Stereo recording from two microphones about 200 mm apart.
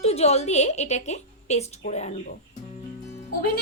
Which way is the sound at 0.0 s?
30° left (ahead or behind).